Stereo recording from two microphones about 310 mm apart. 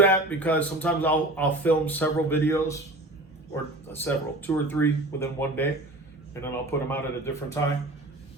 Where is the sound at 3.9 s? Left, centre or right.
Centre.